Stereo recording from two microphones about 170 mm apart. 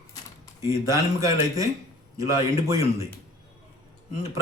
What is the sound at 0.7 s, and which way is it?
Speech, 20° right (ahead or behind).